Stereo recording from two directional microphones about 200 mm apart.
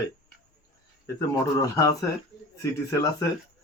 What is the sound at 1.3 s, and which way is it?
Speech, 15° left (ahead or behind).